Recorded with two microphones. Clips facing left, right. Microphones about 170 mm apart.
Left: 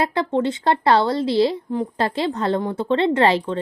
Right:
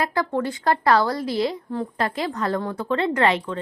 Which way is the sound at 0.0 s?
25° left (ahead or behind).